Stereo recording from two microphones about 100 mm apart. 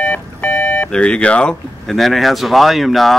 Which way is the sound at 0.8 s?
10° left (ahead or behind).